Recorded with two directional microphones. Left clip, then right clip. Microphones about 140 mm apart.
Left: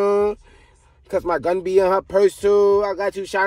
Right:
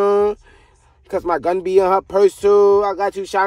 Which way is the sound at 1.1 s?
20° right (ahead or behind).